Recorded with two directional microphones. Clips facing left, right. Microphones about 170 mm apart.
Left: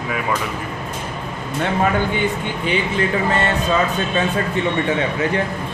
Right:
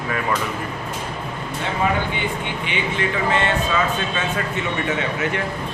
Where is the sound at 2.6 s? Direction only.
40° left (ahead or behind).